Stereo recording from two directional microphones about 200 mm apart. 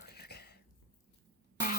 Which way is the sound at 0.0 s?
50° left (ahead or behind).